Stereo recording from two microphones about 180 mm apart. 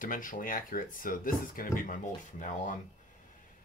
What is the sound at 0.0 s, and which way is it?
Speech, 50° left (ahead or behind).